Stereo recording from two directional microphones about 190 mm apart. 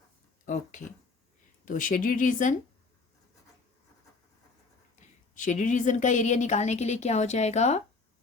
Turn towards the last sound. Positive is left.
turn(degrees=35)  # may be behind; listen again after turning